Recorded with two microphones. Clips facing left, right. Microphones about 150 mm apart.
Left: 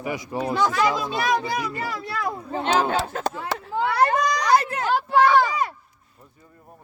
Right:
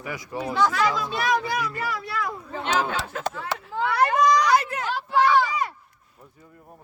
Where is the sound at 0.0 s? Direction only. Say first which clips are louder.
Left 4 dB; 20° left (ahead or behind); by 3.2 s 35° left (ahead or behind).